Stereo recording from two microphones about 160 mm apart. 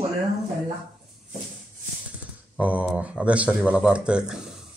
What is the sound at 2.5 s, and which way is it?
Speech, 10° right (ahead or behind).